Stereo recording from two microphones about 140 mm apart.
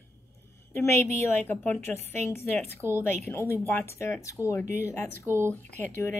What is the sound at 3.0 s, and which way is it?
A woman's voice, 20° left (ahead or behind).